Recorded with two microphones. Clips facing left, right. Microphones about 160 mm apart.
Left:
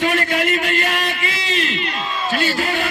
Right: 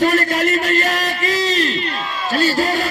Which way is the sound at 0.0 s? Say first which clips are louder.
Right 3 dB; 40° right (ahead or behind).